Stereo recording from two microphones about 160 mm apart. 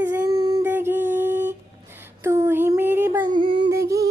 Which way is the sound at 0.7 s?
15° right (ahead or behind).